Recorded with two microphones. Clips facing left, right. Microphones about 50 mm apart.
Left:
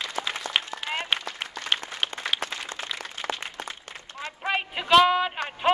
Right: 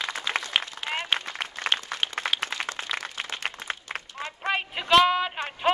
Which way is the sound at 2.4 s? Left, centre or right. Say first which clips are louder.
Right 3 dB; right.